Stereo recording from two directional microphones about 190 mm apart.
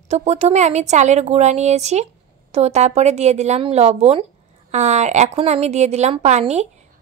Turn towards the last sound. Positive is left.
turn(degrees=-35)  # may be behind; listen again after turning